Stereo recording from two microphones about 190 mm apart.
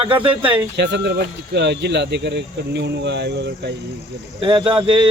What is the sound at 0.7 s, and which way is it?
Speech, 60° right (ahead or behind).